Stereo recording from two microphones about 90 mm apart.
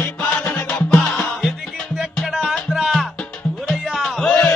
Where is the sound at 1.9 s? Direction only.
Centre (ahead or behind).